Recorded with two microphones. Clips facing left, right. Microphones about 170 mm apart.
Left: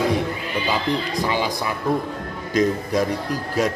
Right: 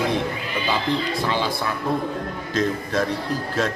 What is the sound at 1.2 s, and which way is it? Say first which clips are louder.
Speech: left 1 dB; 15° left (ahead or behind).